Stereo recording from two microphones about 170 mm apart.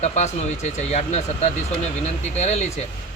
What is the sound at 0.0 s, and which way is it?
Speech, 40° left (ahead or behind).